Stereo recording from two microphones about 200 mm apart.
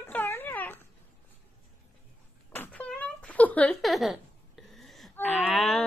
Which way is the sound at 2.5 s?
10° left (ahead or behind).